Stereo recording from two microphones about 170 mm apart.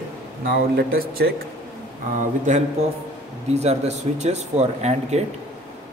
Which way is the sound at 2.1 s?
45° right (ahead or behind).